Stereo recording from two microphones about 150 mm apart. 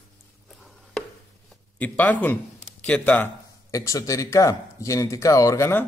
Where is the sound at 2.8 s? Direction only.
10° left (ahead or behind).